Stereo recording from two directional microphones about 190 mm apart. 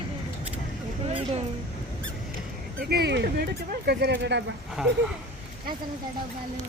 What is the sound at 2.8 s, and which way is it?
Speech, 55° right (ahead or behind).